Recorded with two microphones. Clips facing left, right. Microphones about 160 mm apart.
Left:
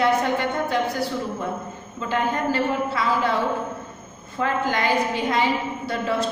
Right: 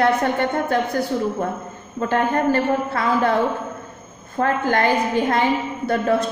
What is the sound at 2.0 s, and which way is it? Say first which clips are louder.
A woman's voice: right 5 dB; 50° right (ahead or behind).